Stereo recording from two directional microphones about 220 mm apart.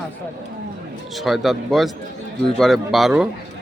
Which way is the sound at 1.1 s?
Centre (ahead or behind).